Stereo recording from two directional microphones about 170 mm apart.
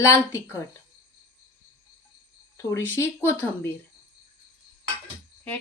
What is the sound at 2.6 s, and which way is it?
Speech, 15° left (ahead or behind).